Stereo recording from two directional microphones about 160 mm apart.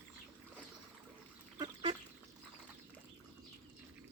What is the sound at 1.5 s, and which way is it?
Duck, 25° right (ahead or behind).